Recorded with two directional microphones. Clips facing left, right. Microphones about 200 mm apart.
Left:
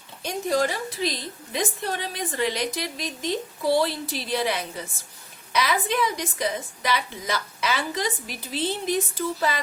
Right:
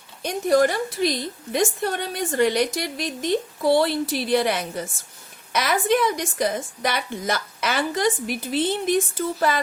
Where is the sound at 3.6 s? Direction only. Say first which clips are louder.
Right 3 dB; 55° right (ahead or behind).